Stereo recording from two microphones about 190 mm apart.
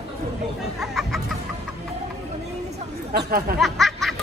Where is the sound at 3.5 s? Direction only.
Centre (ahead or behind).